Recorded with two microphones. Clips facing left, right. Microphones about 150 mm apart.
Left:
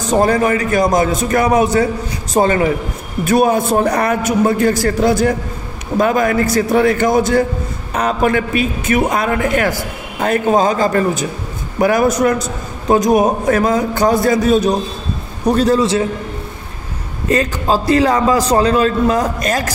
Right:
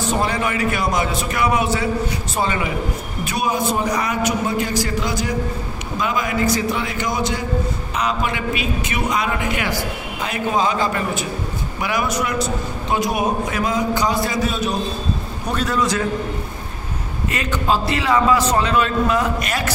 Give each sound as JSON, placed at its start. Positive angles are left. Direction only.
{"t": 0.0, "sound": "a man's voice", "side_deg": 45}
{"t": 17.3, "sound": "a man's voice", "side_deg": 35}